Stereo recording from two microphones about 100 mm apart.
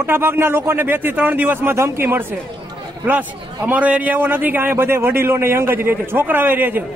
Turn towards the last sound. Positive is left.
turn(degrees=-20)  # may be behind; listen again after turning